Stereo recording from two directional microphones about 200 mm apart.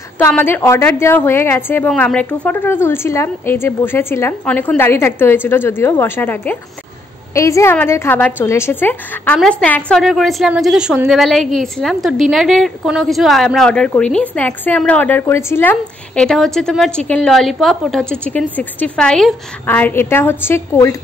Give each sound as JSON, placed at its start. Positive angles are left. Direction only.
{"t": 0.2, "sound": "a woman's voice", "side_deg": 10}